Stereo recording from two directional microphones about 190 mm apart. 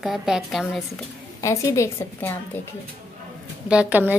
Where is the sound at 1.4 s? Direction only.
15° left (ahead or behind).